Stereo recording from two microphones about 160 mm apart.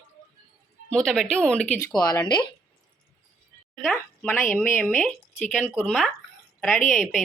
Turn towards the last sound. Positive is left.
turn(degrees=0)  # may be behind; listen again after turning